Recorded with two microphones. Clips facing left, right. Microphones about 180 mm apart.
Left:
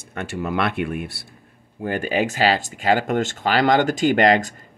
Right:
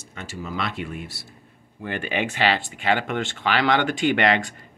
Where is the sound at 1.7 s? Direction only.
40° left (ahead or behind).